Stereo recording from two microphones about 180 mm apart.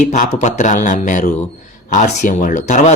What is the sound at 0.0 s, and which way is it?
A man's voice, 40° left (ahead or behind).